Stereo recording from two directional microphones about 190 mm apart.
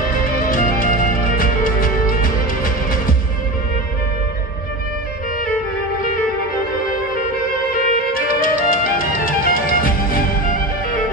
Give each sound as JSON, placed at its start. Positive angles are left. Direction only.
{"t": 0.2, "sound": "music", "side_deg": 45}
{"t": 7.7, "sound": "music", "side_deg": 45}